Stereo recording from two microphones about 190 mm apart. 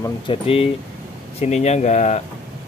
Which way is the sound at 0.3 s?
30° left (ahead or behind).